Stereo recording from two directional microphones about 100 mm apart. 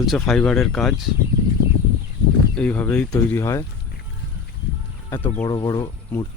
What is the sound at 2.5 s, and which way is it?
Speech, 15° left (ahead or behind).